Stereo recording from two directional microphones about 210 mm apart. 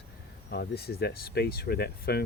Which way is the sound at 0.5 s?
50° left (ahead or behind).